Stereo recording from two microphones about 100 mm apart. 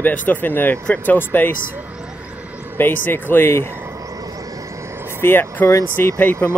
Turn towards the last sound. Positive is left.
turn(degrees=15)  # may be behind; listen again after turning